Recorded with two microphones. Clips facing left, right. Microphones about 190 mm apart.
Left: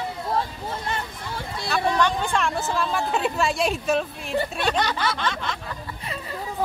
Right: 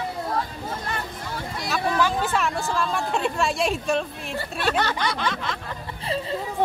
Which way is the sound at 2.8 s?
Centre (ahead or behind).